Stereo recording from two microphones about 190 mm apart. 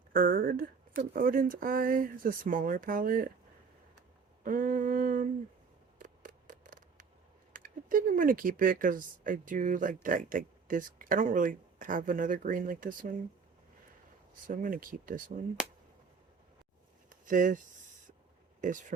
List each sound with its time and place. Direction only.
0.1 s speech: 45° right (ahead or behind)
4.4 s speech: 45° right (ahead or behind)
6.0 s scissors: 45° right (ahead or behind)
7.5 s speech: 45° right (ahead or behind)
14.4 s speech: 45° right (ahead or behind)
17.1 s a sound: 45° right (ahead or behind)
18.6 s speech: 40° right (ahead or behind)